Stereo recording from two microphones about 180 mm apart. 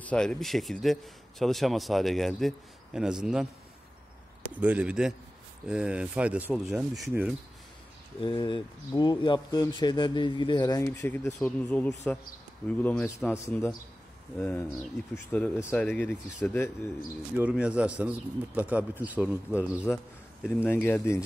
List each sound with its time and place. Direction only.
0.0 s a man's voice: 5° left (ahead or behind)
4.6 s a man's voice: 10° right (ahead or behind)
8.2 s speech: 25° left (ahead or behind)
17.4 s speech: 5° right (ahead or behind)
20.4 s speech: 10° left (ahead or behind)